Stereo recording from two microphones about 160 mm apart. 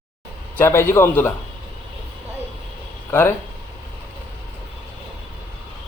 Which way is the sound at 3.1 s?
15° left (ahead or behind).